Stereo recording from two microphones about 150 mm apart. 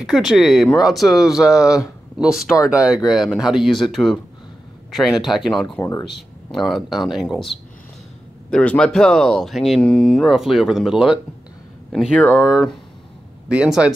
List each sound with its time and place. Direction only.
0.0 s speech: 5° right (ahead or behind)
5.8 s speech: 20° left (ahead or behind)
6.0 s speech: centre (ahead or behind)